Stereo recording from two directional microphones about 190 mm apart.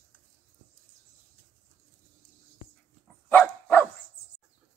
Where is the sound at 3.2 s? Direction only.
10° left (ahead or behind).